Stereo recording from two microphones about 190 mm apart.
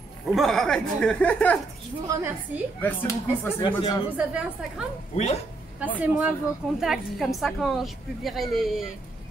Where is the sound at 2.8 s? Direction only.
10° left (ahead or behind).